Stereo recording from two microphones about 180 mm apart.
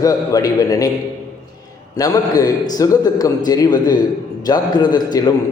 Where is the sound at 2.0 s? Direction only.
20° left (ahead or behind).